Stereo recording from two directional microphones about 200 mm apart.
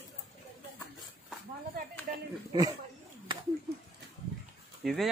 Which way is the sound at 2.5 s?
20° right (ahead or behind).